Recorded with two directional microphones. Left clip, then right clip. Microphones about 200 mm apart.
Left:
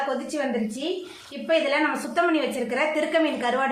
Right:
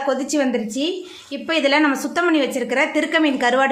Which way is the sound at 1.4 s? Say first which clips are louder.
Right 5 dB; 55° right (ahead or behind).